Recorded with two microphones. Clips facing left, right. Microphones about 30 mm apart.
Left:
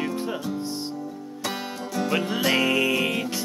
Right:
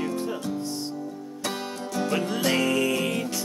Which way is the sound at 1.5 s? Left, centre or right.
Centre.